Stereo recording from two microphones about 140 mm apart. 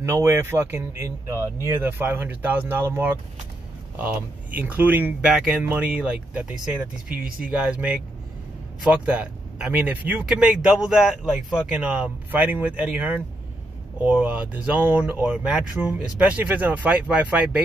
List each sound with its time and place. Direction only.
0.0 s speech: 20° right (ahead or behind)
7.4 s speech: 5° right (ahead or behind)